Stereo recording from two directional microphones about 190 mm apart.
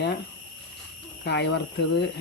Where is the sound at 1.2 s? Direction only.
65° left (ahead or behind).